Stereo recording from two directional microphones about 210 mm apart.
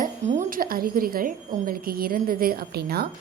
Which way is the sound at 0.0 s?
35° right (ahead or behind).